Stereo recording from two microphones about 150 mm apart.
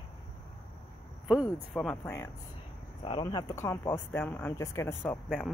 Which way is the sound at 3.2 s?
25° left (ahead or behind).